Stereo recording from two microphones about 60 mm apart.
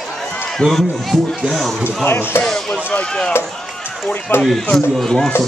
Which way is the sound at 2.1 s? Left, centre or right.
Left.